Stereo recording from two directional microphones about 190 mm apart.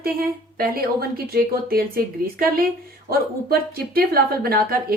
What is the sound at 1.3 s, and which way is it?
Speech, 50° right (ahead or behind).